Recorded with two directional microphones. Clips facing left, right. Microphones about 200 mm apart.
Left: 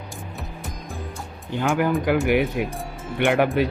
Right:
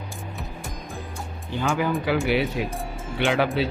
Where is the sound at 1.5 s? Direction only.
15° left (ahead or behind).